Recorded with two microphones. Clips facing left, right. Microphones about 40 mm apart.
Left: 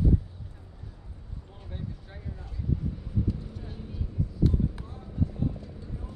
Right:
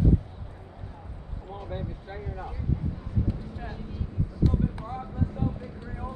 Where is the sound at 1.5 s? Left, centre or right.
Right.